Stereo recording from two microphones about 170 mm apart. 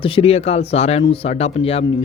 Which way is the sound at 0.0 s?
35° left (ahead or behind).